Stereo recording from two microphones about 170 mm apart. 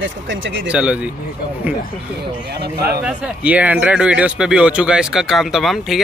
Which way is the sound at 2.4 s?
75° right (ahead or behind).